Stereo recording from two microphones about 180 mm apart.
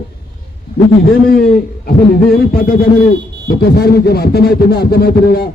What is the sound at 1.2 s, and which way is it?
A man's voice, 55° left (ahead or behind).